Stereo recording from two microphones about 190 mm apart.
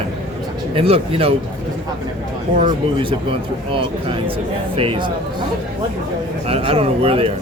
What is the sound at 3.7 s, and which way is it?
Speech, 30° right (ahead or behind).